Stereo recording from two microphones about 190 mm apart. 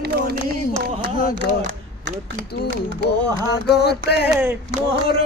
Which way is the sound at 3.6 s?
60° left (ahead or behind).